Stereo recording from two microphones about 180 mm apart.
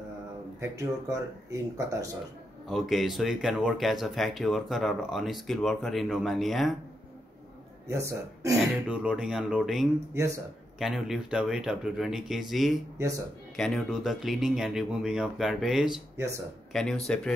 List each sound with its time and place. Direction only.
0.6 s speech: 15° right (ahead or behind)
2.7 s speech: centre (ahead or behind)
7.9 s speech: 15° right (ahead or behind)
8.8 s speech: 5° right (ahead or behind)
10.1 s speech: 15° right (ahead or behind)
10.8 s speech: centre (ahead or behind)